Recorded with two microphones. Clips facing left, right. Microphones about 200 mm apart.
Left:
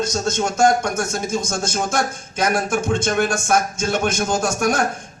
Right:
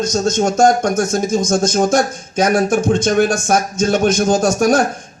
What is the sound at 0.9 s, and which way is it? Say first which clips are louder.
Speech: right 7 dB; 20° right (ahead or behind).